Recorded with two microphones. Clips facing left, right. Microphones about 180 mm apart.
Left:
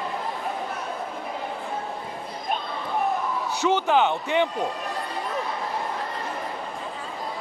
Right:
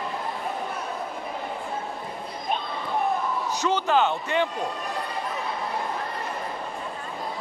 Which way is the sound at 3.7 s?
15° left (ahead or behind).